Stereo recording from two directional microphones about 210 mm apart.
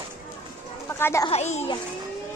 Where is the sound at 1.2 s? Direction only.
30° left (ahead or behind).